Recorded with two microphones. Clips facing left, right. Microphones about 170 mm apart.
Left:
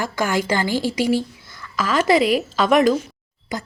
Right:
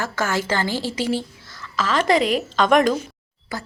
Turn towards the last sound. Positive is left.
turn(degrees=20)  # may be behind; listen again after turning